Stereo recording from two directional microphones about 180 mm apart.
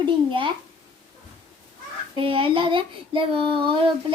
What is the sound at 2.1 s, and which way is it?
Child singing, 30° right (ahead or behind).